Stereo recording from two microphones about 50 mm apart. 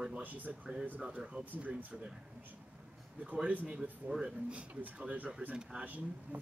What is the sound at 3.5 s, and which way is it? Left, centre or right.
Speech, right.